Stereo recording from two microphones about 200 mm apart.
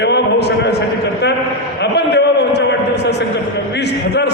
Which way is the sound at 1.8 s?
55° left (ahead or behind).